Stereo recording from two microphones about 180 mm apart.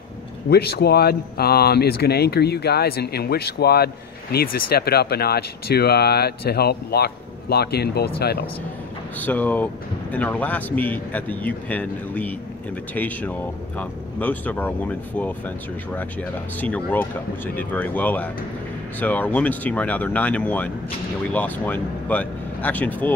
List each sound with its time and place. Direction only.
0.5 s speech: 65° left (ahead or behind)
9.2 s speech: 10° left (ahead or behind)